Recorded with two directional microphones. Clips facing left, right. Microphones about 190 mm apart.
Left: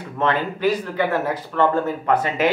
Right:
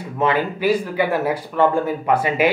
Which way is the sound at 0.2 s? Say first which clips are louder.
Right 1 dB; 10° right (ahead or behind).